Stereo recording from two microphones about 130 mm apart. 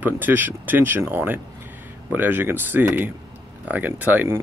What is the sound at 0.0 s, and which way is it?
Speech, 15° right (ahead or behind).